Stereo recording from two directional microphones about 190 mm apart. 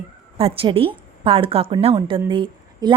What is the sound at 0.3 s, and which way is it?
A woman's voice, 30° right (ahead or behind).